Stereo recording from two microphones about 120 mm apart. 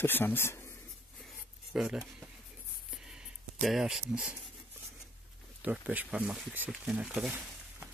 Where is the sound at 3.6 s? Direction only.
Centre (ahead or behind).